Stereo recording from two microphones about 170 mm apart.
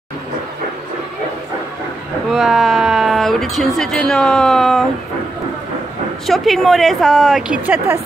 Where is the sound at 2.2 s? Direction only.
Centre (ahead or behind).